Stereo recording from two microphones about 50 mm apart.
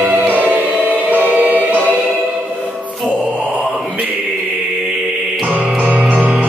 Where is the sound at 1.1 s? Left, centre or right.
Right.